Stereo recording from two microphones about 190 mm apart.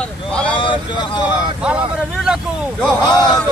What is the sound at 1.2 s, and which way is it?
Speech, 10° right (ahead or behind).